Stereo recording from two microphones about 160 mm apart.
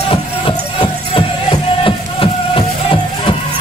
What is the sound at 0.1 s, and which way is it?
Music, 35° left (ahead or behind).